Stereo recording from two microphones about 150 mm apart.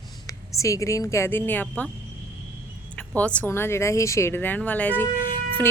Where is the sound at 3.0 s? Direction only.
10° left (ahead or behind).